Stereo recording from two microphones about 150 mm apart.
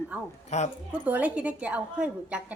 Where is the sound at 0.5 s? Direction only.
50° left (ahead or behind).